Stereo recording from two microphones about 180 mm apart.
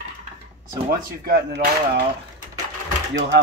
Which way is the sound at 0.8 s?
60° right (ahead or behind).